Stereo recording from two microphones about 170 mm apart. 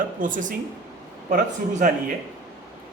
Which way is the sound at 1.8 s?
50° right (ahead or behind).